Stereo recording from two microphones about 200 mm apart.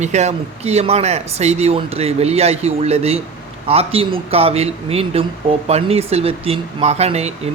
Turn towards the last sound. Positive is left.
turn(degrees=-30)  # may be behind; listen again after turning